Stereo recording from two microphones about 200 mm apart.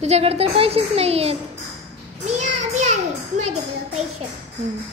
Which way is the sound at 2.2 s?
35° right (ahead or behind).